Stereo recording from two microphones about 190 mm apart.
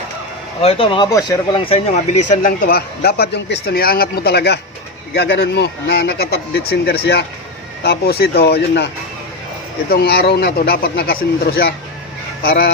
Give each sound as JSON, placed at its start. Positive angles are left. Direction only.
{"t": 0.6, "sound": "speech", "side_deg": 30}
{"t": 1.9, "sound": "a man's voice", "side_deg": 40}
{"t": 9.9, "sound": "a man's voice", "side_deg": 55}